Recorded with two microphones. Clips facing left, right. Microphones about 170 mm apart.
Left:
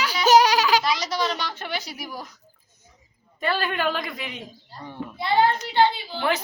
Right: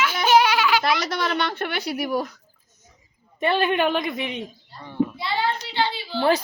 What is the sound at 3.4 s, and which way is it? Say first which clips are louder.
A woman's voice: right 4 dB; 20° right (ahead or behind).